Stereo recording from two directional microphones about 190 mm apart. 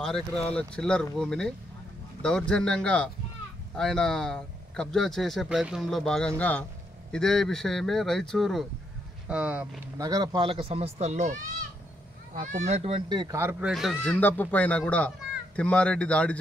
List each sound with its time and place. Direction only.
0.0 s speech: 5° left (ahead or behind)
10.0 s speech: 20° right (ahead or behind); by 11.3 s 35° right (ahead or behind)
12.4 s speech: 40° right (ahead or behind); by 13.4 s 25° right (ahead or behind)
13.4 s speech: 10° right (ahead or behind); by 16.3 s 5° left (ahead or behind)